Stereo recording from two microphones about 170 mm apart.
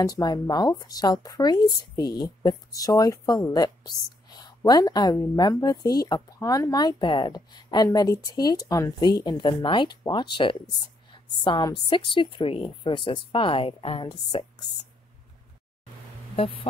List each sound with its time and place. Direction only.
0.0 s speech: 25° left (ahead or behind)
11.1 s a sound: 25° left (ahead or behind)
11.9 s speech: 30° left (ahead or behind)